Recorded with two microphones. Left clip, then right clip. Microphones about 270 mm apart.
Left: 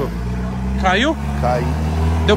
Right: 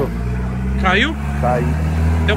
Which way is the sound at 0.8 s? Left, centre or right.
Centre.